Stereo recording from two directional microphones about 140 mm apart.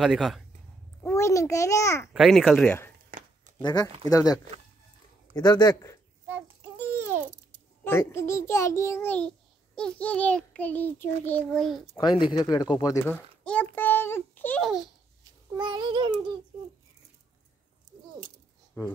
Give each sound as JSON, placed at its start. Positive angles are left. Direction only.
{"t": 0.0, "sound": "speech", "side_deg": 0}
{"t": 1.0, "sound": "a child's voice", "side_deg": 20}
{"t": 2.1, "sound": "speech", "side_deg": 0}
{"t": 3.1, "sound": "a sound", "side_deg": -75}
{"t": 3.6, "sound": "a child's voice", "side_deg": 30}
{"t": 6.6, "sound": "babbling", "side_deg": -15}
{"t": 7.8, "sound": "a child's voice", "side_deg": 20}
{"t": 11.9, "sound": "speech", "side_deg": 35}
{"t": 13.1, "sound": "a child's voice", "side_deg": 10}
{"t": 15.5, "sound": "child singing", "side_deg": -35}
{"t": 18.8, "sound": "speech", "side_deg": 20}